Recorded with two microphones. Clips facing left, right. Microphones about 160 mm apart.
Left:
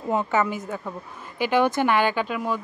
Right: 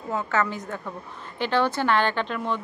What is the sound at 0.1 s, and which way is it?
Speech, 15° left (ahead or behind).